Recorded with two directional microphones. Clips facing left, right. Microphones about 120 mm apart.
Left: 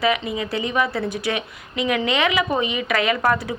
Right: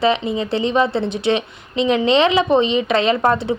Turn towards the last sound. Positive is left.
turn(degrees=-25)  # may be behind; listen again after turning